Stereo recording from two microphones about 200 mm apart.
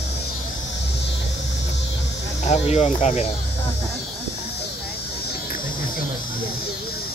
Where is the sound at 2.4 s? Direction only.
35° left (ahead or behind).